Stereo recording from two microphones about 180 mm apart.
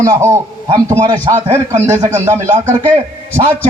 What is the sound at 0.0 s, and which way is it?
A man's voice, 15° right (ahead or behind).